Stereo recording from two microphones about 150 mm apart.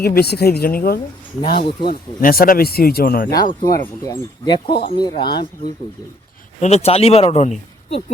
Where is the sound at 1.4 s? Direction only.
90° left.